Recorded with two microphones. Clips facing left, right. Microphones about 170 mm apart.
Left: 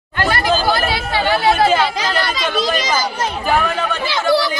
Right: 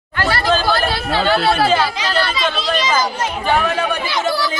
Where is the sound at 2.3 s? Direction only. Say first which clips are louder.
Left 1 dB; 40° left (ahead or behind).